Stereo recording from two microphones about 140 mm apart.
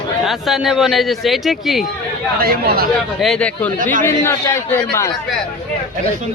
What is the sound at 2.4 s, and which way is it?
Speech, 90° right.